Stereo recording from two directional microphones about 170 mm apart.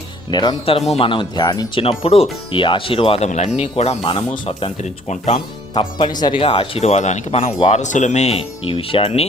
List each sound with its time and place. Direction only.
0.3 s speech: 25° left (ahead or behind); by 5.4 s 40° left (ahead or behind)
6.1 s speech: 25° left (ahead or behind)